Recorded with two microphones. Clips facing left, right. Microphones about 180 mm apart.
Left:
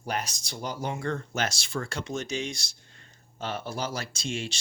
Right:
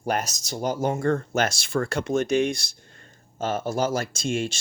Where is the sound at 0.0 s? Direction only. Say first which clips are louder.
Right 6 dB; 50° right (ahead or behind).